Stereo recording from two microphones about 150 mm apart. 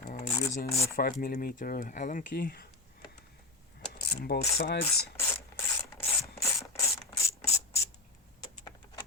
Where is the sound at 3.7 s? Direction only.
90° left.